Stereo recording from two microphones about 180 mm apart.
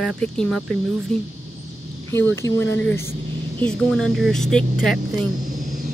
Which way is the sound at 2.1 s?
15° left (ahead or behind).